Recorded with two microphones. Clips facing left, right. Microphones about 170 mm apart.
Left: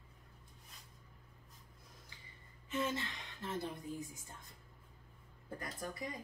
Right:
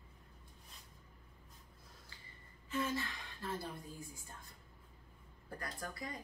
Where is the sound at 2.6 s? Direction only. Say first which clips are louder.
Even; 20° left (ahead or behind).